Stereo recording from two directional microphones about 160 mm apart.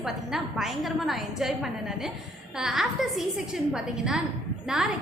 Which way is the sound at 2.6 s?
Centre (ahead or behind).